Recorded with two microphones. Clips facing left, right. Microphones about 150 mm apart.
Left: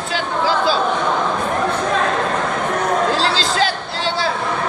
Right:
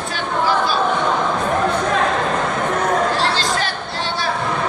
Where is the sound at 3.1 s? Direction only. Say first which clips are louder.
Left 1 dB; 90° left.